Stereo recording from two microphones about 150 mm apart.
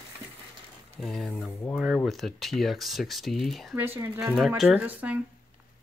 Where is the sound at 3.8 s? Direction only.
15° right (ahead or behind).